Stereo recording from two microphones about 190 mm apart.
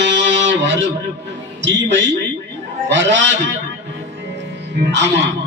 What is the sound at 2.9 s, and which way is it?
Speech, 70° right (ahead or behind).